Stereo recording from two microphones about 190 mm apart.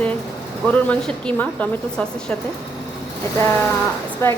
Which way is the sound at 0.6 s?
5° left (ahead or behind).